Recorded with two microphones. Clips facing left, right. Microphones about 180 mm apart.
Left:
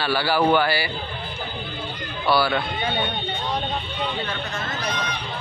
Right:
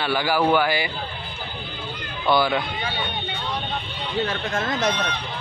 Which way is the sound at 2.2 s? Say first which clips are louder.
Right 1 dB; 20° right (ahead or behind).